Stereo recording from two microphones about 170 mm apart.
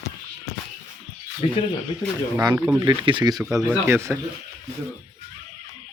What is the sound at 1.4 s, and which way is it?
Speech, 40° left (ahead or behind).